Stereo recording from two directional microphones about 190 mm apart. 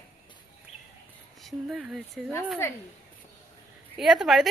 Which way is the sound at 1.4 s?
Centre (ahead or behind).